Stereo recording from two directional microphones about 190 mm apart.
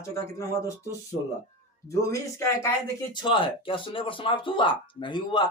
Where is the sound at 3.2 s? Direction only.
25° left (ahead or behind).